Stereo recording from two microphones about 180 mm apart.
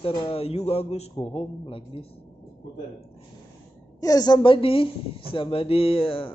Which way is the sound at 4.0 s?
20° left (ahead or behind).